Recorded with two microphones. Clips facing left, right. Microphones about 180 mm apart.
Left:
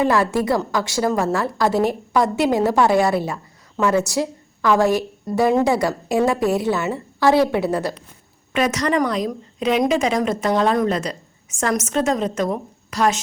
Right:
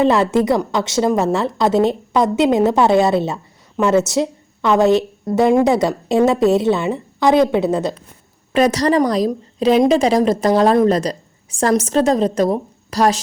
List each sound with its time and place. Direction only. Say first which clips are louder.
0.0 s a woman's voice: right 4 dB; 20° right (ahead or behind)
8.5 s a woman's voice: right 5 dB; 35° right (ahead or behind)